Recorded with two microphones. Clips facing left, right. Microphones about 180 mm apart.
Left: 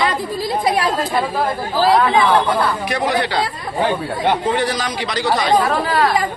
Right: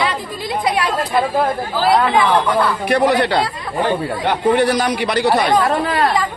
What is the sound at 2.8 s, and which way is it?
Speech, 60° right (ahead or behind).